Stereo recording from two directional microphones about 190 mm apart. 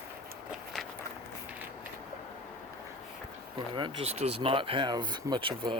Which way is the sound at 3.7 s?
25° right (ahead or behind).